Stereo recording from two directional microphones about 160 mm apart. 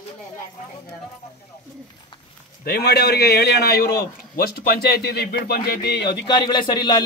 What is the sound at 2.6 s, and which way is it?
A man's voice, 85° left.